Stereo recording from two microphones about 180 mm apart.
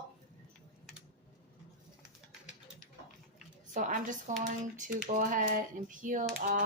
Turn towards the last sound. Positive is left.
turn(degrees=-45)  # may be behind; listen again after turning